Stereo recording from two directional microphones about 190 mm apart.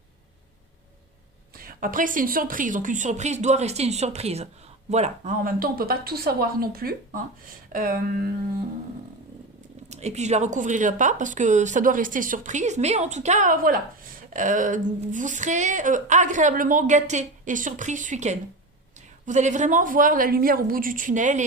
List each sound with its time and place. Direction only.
1.5 s a woman's voice: 50° right (ahead or behind)
9.9 s a woman's voice: 35° right (ahead or behind)